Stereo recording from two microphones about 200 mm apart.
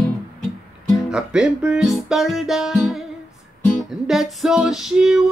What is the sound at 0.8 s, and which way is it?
Music, 15° left (ahead or behind).